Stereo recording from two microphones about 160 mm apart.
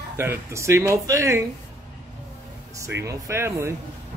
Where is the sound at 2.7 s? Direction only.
20° right (ahead or behind).